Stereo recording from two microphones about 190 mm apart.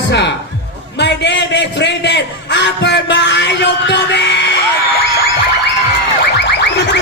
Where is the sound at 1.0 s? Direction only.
65° left (ahead or behind).